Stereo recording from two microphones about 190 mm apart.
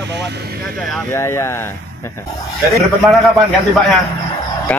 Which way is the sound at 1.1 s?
15° left (ahead or behind).